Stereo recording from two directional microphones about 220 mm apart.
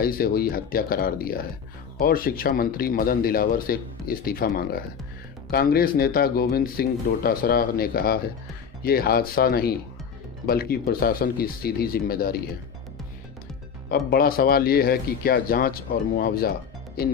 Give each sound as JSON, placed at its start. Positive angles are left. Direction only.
{"t": 0.0, "sound": "speech", "side_deg": 40}
{"t": 13.9, "sound": "speech", "side_deg": 45}